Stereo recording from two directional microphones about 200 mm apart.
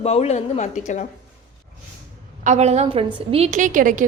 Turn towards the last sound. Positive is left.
turn(degrees=-40)  # may be behind; listen again after turning